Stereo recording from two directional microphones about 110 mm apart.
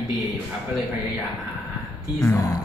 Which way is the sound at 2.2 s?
30° left (ahead or behind).